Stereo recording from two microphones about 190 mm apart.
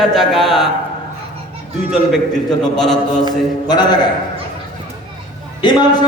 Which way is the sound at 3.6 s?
20° left (ahead or behind).